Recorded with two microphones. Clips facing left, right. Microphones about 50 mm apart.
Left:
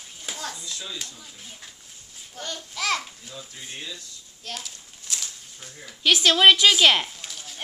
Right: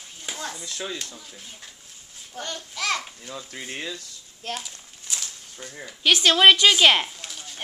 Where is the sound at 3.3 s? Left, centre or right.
Right.